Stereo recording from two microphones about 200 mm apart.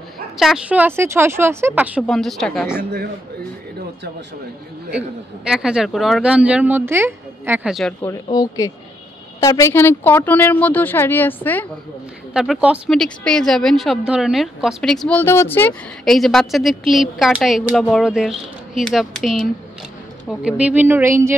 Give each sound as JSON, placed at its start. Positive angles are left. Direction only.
{"t": 0.4, "sound": "speech", "side_deg": -5}
{"t": 4.9, "sound": "a woman's voice", "side_deg": -5}
{"t": 8.0, "sound": "a woman's voice", "side_deg": 15}
{"t": 12.4, "sound": "a woman's voice", "side_deg": -5}